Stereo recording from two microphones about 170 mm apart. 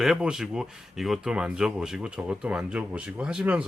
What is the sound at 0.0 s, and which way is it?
Speech, 5° right (ahead or behind).